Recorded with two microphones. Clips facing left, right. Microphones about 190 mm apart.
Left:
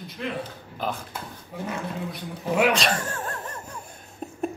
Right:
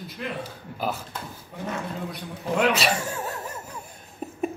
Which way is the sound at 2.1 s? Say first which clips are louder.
Left 1 dB; centre (ahead or behind).